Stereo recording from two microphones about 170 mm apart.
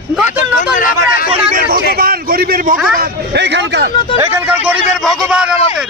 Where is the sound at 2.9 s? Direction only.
85° right.